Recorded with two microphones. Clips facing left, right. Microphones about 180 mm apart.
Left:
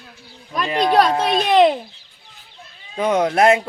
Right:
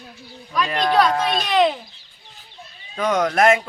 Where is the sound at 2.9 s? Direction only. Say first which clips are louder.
Left 2 dB; 30° left (ahead or behind).